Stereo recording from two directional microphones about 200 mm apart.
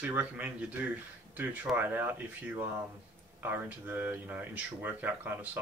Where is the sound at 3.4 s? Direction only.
10° right (ahead or behind).